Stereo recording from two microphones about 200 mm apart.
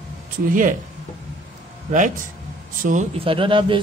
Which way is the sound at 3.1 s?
25° right (ahead or behind).